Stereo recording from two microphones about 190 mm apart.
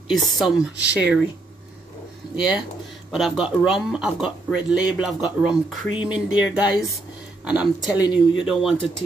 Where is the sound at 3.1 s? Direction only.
5° right (ahead or behind).